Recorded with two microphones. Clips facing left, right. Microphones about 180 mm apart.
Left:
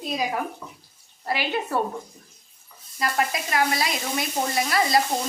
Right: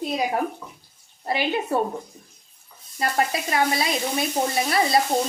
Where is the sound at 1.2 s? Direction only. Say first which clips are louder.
Right 2 dB; 20° right (ahead or behind).